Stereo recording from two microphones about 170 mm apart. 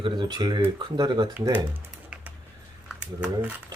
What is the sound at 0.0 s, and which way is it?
Speech, 25° right (ahead or behind).